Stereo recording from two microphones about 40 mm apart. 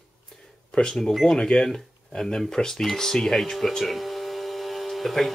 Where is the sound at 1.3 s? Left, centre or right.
Centre.